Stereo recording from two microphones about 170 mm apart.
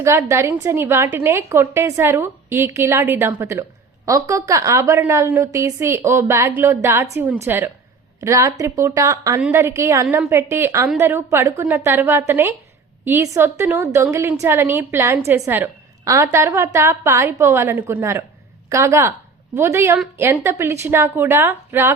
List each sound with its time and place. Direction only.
0.0 s a woman's voice: 15° right (ahead or behind)